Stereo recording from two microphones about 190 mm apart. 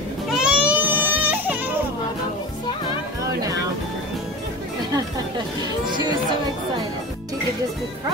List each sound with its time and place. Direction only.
0.3 s baby cry: 5° right (ahead or behind)
5.9 s music: 25° right (ahead or behind)